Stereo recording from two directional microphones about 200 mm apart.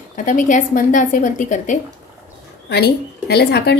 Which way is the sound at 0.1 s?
40° left (ahead or behind).